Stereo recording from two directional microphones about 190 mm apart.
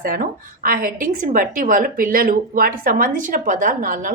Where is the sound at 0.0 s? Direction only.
50° right (ahead or behind).